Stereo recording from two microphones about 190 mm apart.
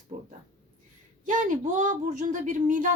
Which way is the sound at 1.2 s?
40° right (ahead or behind).